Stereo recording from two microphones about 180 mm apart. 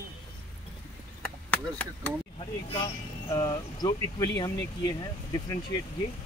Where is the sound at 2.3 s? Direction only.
25° left (ahead or behind).